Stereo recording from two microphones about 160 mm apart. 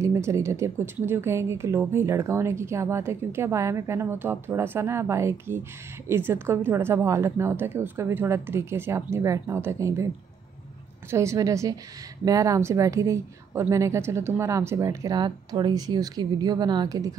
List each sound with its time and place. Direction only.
0.0 s speech: 20° right (ahead or behind)
11.1 s a woman's voice: 20° right (ahead or behind)